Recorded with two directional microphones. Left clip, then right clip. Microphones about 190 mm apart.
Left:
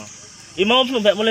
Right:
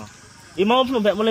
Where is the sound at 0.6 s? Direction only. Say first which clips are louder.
Left 2 dB; 65° right (ahead or behind).